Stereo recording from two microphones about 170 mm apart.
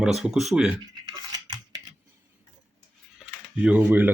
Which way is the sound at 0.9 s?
25° right (ahead or behind).